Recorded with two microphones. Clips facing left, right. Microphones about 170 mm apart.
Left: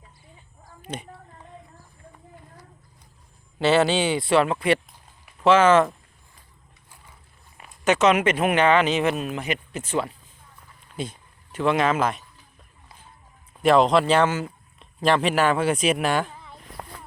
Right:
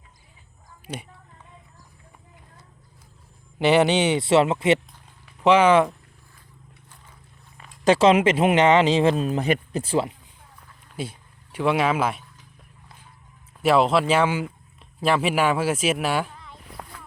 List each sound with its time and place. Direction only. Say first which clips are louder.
0.8 s a sound: left 1 dB; 10° right (ahead or behind)
3.6 s speech: right 1 dB; 15° right (ahead or behind)
7.9 s speech: right 3 dB; 30° right (ahead or behind)
10.9 s speech: even; 10° right (ahead or behind)
13.6 s speech: left 1 dB; 5° right (ahead or behind)